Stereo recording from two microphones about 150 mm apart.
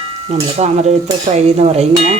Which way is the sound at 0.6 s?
45° right (ahead or behind).